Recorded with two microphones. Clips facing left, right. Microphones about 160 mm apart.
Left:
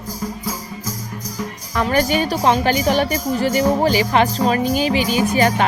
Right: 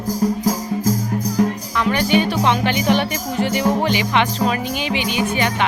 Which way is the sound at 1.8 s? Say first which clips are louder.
Even; 40° left (ahead or behind).